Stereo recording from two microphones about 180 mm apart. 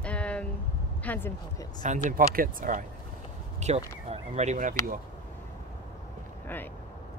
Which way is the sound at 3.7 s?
35° right (ahead or behind).